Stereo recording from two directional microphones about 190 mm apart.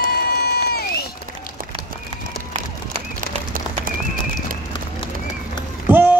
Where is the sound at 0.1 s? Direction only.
55° left (ahead or behind).